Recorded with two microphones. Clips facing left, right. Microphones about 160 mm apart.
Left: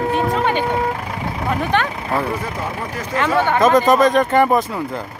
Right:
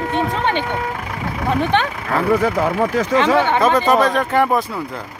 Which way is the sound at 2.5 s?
80° right.